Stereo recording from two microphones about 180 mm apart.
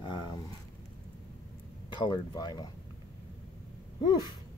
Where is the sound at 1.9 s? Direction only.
25° left (ahead or behind).